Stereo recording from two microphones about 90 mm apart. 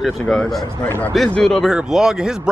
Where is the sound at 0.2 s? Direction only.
5° left (ahead or behind).